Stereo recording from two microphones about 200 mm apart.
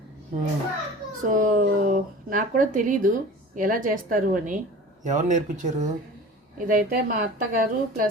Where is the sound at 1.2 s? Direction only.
40° right (ahead or behind).